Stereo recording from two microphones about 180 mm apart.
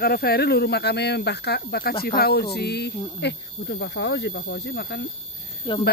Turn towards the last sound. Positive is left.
turn(degrees=25)  # may be behind; listen again after turning